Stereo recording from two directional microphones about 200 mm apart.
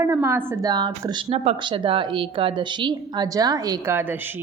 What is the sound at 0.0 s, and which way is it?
Speech, 15° right (ahead or behind).